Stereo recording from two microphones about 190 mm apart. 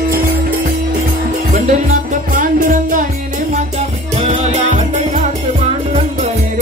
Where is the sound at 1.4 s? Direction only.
40° right (ahead or behind).